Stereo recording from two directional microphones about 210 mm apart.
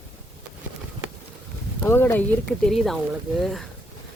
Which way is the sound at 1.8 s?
10° left (ahead or behind).